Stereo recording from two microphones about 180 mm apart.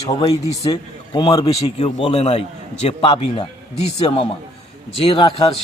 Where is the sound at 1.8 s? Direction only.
35° left (ahead or behind).